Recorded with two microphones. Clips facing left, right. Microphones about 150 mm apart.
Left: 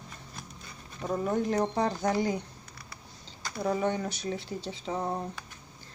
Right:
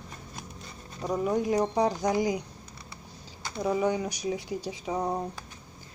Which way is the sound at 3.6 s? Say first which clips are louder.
Right 2 dB; 10° right (ahead or behind).